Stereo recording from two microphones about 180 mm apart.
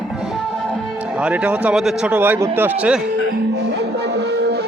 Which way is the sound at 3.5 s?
65° right (ahead or behind).